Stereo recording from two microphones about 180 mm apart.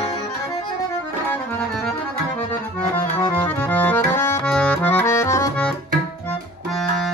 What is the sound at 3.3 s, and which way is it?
Music, 10° left (ahead or behind).